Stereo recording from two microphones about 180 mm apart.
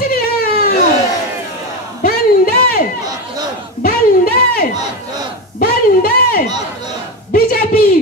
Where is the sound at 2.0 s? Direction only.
50° left (ahead or behind).